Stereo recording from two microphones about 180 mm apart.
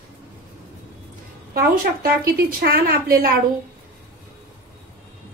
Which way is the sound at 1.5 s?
55° right (ahead or behind).